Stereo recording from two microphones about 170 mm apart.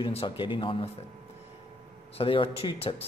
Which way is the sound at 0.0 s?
30° left (ahead or behind).